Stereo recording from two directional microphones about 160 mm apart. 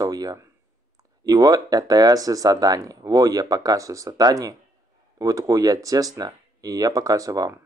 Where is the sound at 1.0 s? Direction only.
20° right (ahead or behind).